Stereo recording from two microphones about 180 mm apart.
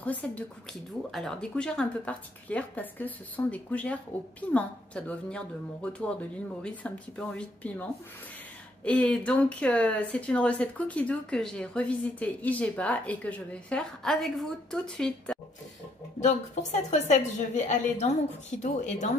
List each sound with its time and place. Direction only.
0.0 s speech: 10° left (ahead or behind)
16.2 s a woman's voice: 40° left (ahead or behind)